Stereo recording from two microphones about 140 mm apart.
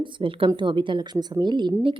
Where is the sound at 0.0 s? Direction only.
40° right (ahead or behind).